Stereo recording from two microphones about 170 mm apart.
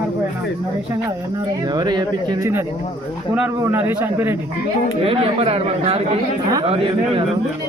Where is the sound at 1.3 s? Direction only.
25° right (ahead or behind).